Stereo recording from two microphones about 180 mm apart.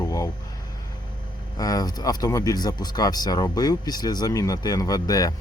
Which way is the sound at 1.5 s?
20° left (ahead or behind).